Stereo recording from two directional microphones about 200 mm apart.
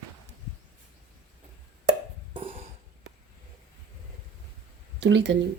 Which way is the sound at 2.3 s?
25° right (ahead or behind).